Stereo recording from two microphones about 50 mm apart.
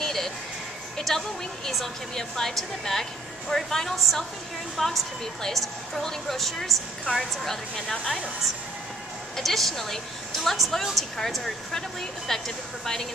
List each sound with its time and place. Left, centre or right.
0.0 s music: centre
0.9 s a woman's voice: centre
9.4 s a woman's voice: centre